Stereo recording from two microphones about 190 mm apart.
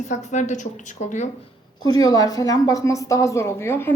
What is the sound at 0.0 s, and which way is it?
A woman's voice, 40° left (ahead or behind).